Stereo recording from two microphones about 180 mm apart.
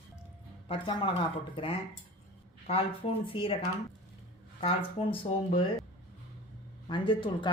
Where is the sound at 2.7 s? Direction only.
30° left (ahead or behind).